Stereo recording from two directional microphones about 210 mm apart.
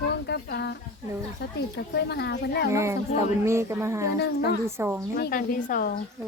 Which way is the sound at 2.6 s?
15° right (ahead or behind).